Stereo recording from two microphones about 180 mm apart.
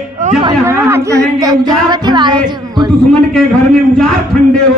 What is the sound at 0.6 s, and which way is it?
A man's voice, 15° right (ahead or behind).